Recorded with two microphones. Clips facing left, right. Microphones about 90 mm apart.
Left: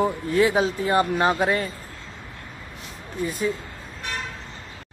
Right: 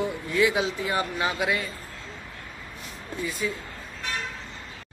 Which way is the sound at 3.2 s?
50° left (ahead or behind).